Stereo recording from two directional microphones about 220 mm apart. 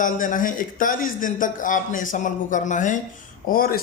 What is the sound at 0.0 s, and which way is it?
Speech, 35° left (ahead or behind).